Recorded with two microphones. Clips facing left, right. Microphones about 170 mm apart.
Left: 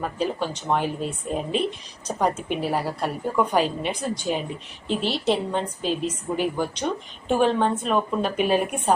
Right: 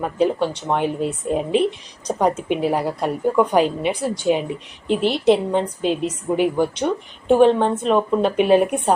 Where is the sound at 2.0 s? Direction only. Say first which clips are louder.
Right 5 dB; 15° right (ahead or behind).